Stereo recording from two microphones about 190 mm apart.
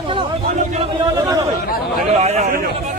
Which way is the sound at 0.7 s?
30° right (ahead or behind).